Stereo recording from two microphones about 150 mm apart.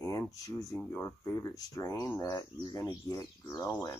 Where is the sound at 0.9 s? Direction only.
20° left (ahead or behind).